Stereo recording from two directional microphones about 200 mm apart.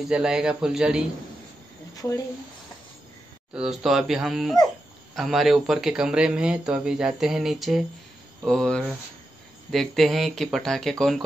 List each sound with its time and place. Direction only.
0.1 s speech: 5° right (ahead or behind)
2.0 s speech: 15° left (ahead or behind)
3.5 s speech: centre (ahead or behind)